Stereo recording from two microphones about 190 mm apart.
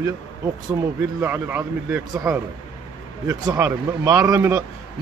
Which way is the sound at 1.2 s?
10° right (ahead or behind).